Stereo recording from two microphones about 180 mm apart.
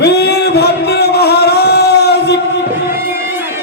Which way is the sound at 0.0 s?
65° left (ahead or behind).